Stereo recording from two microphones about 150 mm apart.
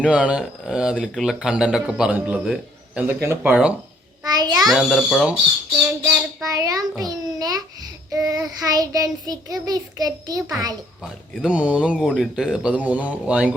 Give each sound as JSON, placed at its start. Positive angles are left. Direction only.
{"t": 0.0, "sound": "speech", "side_deg": -5}
{"t": 3.1, "sound": "a man's voice", "side_deg": -15}
{"t": 4.2, "sound": "a sound", "side_deg": -25}
{"t": 4.6, "sound": "speech", "side_deg": 0}
{"t": 6.4, "sound": "a child's voice", "side_deg": -25}
{"t": 7.0, "sound": "child singing", "side_deg": -25}
{"t": 11.4, "sound": "a man's voice", "side_deg": -5}